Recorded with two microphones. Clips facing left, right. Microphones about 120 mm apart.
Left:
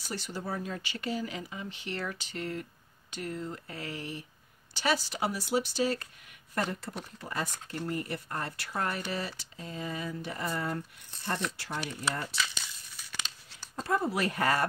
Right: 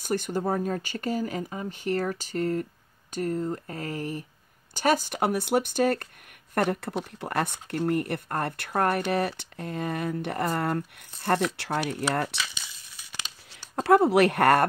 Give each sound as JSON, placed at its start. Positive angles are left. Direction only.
{"t": 0.0, "sound": "speech", "side_deg": -50}
{"t": 13.7, "sound": "speech", "side_deg": -70}